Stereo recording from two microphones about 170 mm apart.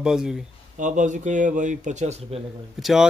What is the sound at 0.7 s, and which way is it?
Speech, 50° right (ahead or behind).